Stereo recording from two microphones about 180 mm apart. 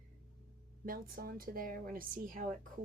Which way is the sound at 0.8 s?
55° right (ahead or behind).